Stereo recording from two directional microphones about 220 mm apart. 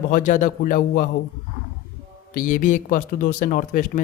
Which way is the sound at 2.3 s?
40° left (ahead or behind).